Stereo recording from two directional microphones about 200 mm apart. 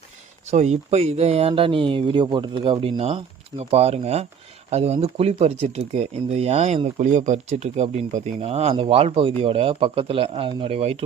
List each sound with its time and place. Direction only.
0.5 s speech: 35° right (ahead or behind)